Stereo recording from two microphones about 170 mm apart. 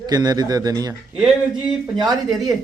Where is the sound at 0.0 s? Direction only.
25° right (ahead or behind).